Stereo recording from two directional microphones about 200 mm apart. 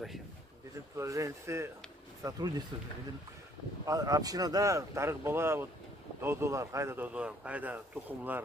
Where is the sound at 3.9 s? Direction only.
20° right (ahead or behind).